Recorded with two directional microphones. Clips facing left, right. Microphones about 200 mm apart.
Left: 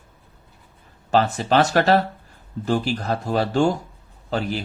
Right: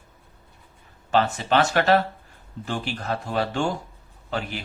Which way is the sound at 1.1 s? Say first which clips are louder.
Left 3 dB; 40° left (ahead or behind).